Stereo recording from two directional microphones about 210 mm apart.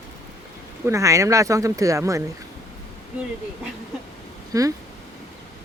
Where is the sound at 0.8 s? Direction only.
15° right (ahead or behind).